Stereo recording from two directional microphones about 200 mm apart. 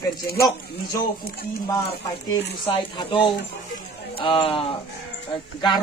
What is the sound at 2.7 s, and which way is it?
Speech, 25° left (ahead or behind).